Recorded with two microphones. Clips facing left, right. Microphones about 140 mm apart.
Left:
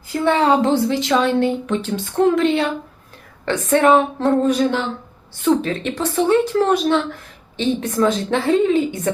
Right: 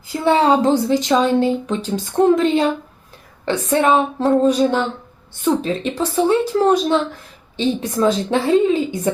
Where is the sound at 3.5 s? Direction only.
10° right (ahead or behind).